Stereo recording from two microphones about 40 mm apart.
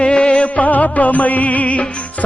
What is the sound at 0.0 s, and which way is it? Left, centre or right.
Music, left.